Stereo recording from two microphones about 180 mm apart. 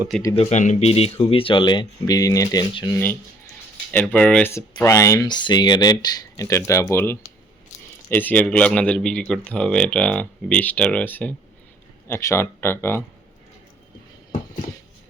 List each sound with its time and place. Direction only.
0.3 s speech: 40° left (ahead or behind); by 2.9 s 25° left (ahead or behind)
3.9 s speech: 10° left (ahead or behind)
4.5 s speech: 15° left (ahead or behind)